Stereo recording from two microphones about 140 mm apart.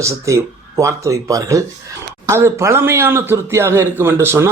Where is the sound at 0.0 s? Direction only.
20° right (ahead or behind).